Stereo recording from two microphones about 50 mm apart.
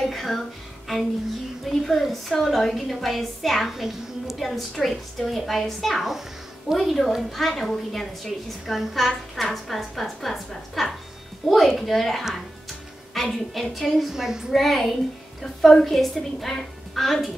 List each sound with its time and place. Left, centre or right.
0.0 s music: centre
1.7 s a woman's voice: centre
14.5 s a woman's voice: centre